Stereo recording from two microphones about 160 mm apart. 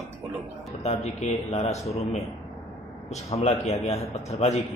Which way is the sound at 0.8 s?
45° left (ahead or behind).